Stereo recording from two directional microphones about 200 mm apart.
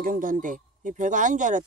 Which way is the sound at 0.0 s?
45° right (ahead or behind).